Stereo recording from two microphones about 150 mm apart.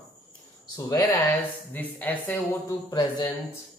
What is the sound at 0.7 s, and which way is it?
Speech, 25° left (ahead or behind).